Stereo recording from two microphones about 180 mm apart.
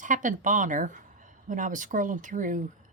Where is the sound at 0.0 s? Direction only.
45° right (ahead or behind).